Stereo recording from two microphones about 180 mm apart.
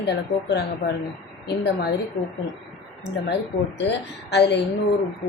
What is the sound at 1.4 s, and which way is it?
Speech, 70° left (ahead or behind).